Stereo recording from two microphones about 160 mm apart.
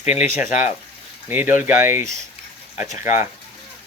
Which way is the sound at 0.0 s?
45° left (ahead or behind).